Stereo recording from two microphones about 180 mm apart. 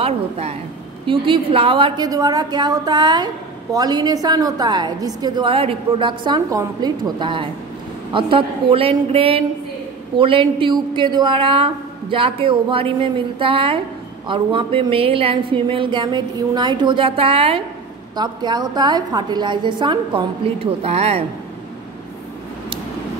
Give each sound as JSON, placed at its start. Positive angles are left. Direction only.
{"t": 0.0, "sound": "a woman's voice", "side_deg": -35}